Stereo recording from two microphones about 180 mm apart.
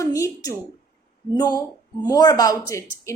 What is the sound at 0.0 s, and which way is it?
A woman's voice, 15° left (ahead or behind).